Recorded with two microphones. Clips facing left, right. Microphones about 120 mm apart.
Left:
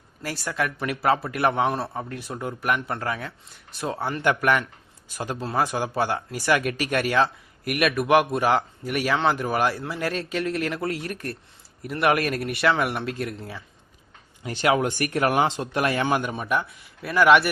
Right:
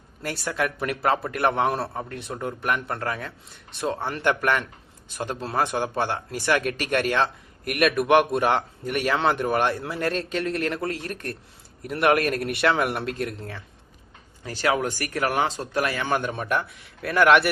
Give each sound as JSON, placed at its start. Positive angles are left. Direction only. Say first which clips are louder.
{"t": 0.2, "sound": "a man's voice", "louder": "right 1 dB", "side_deg": 0}
{"t": 6.6, "sound": "speech", "louder": "even", "side_deg": -40}
{"t": 7.7, "sound": "a man's voice", "louder": "right 1 dB", "side_deg": 5}
{"t": 14.4, "sound": "speech", "louder": "left 2 dB", "side_deg": 20}
{"t": 16.1, "sound": "a man's voice", "louder": "even", "side_deg": 5}